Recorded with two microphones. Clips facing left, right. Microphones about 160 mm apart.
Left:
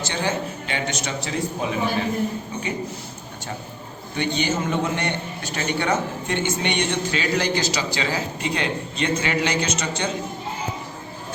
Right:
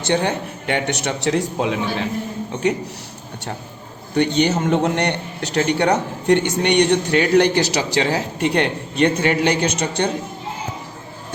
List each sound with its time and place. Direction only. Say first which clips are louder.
0.0 s a man's voice: right 5 dB; 60° right (ahead or behind)
4.1 s a man's voice: right 7 dB; 60° right (ahead or behind)